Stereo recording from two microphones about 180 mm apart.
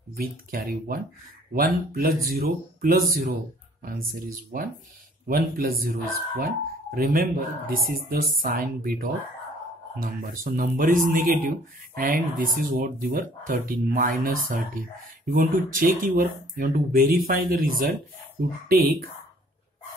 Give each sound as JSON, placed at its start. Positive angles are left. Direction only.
{"t": 0.1, "sound": "speech", "side_deg": -55}
{"t": 10.2, "sound": "speech", "side_deg": -50}